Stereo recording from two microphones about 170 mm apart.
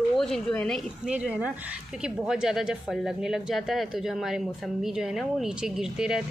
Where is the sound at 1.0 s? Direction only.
5° right (ahead or behind).